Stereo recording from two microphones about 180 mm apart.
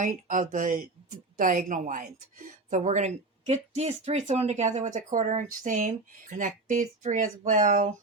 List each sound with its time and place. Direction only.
0.0 s a woman's voice: 45° right (ahead or behind)